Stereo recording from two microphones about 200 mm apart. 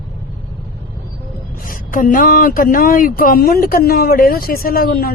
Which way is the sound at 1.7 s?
45° left (ahead or behind).